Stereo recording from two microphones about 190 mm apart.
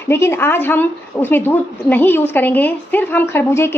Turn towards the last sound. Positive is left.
turn(degrees=10)  # may be behind; listen again after turning